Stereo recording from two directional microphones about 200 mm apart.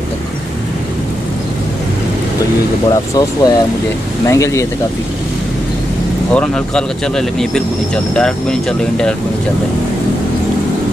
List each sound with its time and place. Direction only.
2.9 s speech: 20° left (ahead or behind)
6.3 s speech: 5° left (ahead or behind)